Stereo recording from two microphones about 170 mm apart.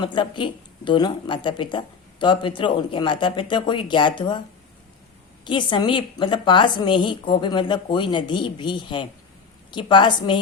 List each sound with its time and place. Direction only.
0.0 s speech: 30° left (ahead or behind)
5.5 s speech: 30° left (ahead or behind)